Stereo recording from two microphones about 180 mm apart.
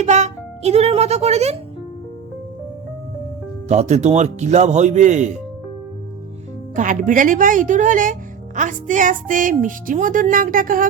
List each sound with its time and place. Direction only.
0.0 s speech: 40° right (ahead or behind)
3.7 s speech: 40° right (ahead or behind)
6.7 s music: 45° right (ahead or behind)